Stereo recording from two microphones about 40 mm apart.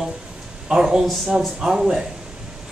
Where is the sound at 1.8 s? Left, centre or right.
Centre.